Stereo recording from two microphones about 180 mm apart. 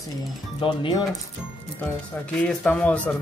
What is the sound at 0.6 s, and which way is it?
Speech, 25° left (ahead or behind).